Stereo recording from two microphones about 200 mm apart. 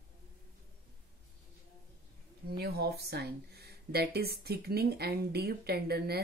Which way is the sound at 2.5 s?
50° right (ahead or behind).